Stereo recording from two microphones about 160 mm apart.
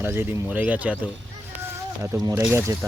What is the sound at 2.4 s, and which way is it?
Speech, 15° right (ahead or behind).